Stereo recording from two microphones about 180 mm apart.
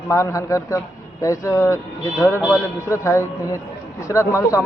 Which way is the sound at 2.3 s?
Centre (ahead or behind).